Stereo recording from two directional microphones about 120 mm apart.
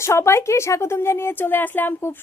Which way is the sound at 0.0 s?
20° left (ahead or behind).